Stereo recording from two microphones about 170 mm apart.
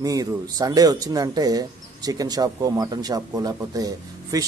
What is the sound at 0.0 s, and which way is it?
Speech, 20° right (ahead or behind).